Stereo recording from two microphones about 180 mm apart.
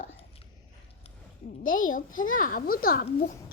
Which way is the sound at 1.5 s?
50° left (ahead or behind).